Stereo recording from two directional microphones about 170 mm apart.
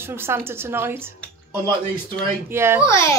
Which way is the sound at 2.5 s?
15° right (ahead or behind).